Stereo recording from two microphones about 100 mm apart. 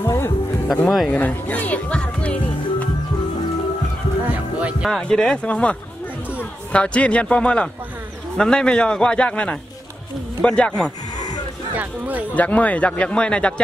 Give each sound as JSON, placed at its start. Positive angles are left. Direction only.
{"t": 0.0, "sound": "music", "side_deg": 25}
{"t": 0.7, "sound": "speech", "side_deg": 5}
{"t": 1.1, "sound": "music", "side_deg": 15}
{"t": 4.6, "sound": "music", "side_deg": -10}
{"t": 5.0, "sound": "a man's voice", "side_deg": 5}
{"t": 11.7, "sound": "speech", "side_deg": -15}
{"t": 12.4, "sound": "a man's voice", "side_deg": 15}